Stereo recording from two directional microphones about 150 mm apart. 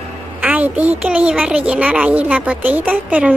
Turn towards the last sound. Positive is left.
turn(degrees=-10)  # may be behind; listen again after turning